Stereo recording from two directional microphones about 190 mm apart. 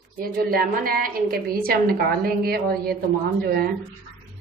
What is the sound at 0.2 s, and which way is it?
A woman's voice, 50° right (ahead or behind).